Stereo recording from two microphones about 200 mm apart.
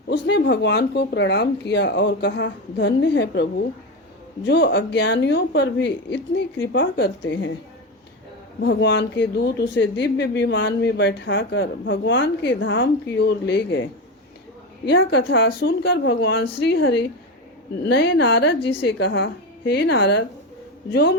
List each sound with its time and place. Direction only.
0.1 s speech: 60° left (ahead or behind)
4.4 s speech: 60° left (ahead or behind)
8.6 s speech: 60° left (ahead or behind)
14.8 s speech: 60° left (ahead or behind)
17.8 s speech: 55° left (ahead or behind)